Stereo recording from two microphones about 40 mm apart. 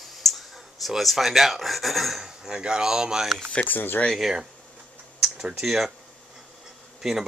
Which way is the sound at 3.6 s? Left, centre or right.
Left.